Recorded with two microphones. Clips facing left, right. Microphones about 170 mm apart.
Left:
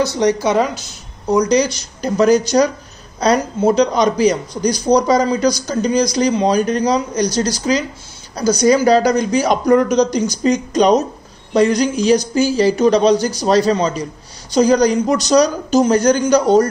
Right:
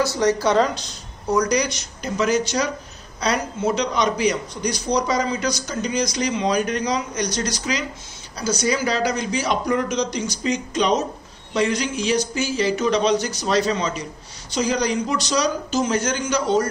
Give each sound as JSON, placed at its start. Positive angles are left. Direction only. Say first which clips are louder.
{"t": 0.0, "sound": "speech", "louder": "left 4 dB", "side_deg": 15}
{"t": 1.6, "sound": "a man's voice", "louder": "left 7 dB", "side_deg": 35}